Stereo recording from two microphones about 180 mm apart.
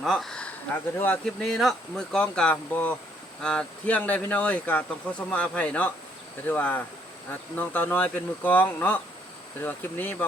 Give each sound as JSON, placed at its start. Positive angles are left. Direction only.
{"t": 0.0, "sound": "speech", "side_deg": 0}